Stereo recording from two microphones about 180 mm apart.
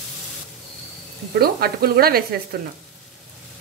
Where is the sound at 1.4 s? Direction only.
60° right (ahead or behind).